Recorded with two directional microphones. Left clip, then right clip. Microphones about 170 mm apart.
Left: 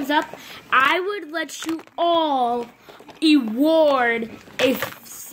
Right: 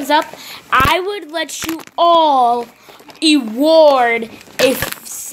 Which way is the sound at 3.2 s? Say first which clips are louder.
Right 5 dB; 20° left (ahead or behind).